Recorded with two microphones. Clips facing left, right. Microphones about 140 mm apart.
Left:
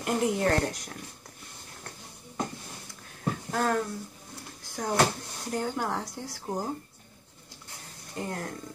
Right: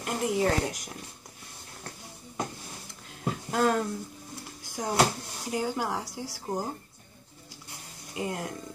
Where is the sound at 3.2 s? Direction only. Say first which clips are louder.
Right 2 dB; 20° right (ahead or behind).